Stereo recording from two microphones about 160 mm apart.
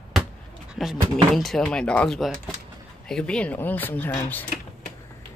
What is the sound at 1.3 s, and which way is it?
Speech, centre (ahead or behind).